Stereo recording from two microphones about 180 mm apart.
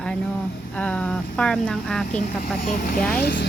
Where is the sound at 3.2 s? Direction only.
60° left (ahead or behind).